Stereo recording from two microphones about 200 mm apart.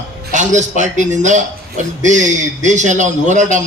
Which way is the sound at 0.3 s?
35° right (ahead or behind).